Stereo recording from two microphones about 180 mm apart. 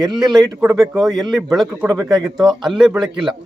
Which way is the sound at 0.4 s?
15° right (ahead or behind).